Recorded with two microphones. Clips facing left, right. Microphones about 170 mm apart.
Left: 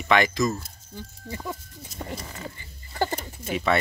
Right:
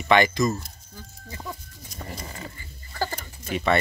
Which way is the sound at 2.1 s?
Centre (ahead or behind).